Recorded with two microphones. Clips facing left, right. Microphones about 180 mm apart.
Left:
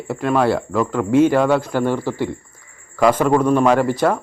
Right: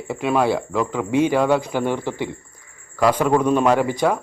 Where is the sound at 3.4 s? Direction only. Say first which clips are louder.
Left 3 dB; 15° right (ahead or behind).